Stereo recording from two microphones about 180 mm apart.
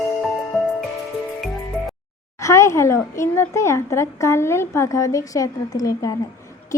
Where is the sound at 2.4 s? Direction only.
15° left (ahead or behind).